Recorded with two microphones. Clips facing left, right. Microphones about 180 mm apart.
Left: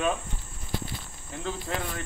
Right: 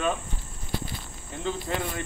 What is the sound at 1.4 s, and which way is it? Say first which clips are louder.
Speech: right 3 dB; centre (ahead or behind).